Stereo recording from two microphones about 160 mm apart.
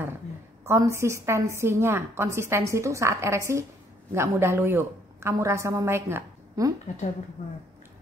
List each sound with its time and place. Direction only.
0.7 s a woman's voice: 20° right (ahead or behind)